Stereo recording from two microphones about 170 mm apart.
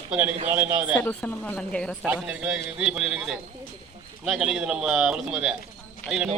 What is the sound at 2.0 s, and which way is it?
A man's voice, 10° right (ahead or behind).